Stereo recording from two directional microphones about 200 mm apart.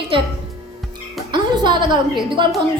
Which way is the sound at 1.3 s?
20° right (ahead or behind).